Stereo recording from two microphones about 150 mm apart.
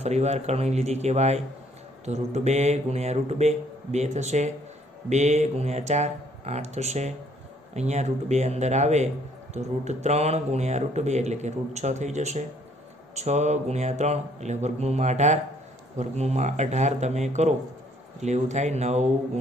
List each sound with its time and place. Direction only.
0.0 s a man's voice: 45° right (ahead or behind)